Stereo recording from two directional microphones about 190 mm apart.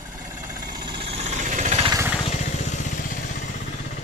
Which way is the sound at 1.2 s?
40° right (ahead or behind).